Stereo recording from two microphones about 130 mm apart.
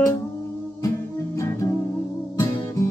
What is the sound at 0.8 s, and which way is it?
Music, 25° left (ahead or behind).